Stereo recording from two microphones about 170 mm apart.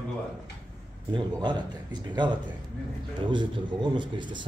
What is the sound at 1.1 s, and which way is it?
A man's voice, 25° right (ahead or behind).